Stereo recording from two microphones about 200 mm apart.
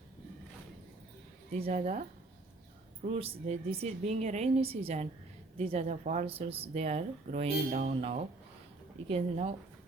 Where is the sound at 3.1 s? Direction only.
30° right (ahead or behind).